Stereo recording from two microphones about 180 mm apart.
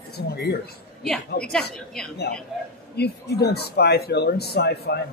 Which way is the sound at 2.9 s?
65° left (ahead or behind).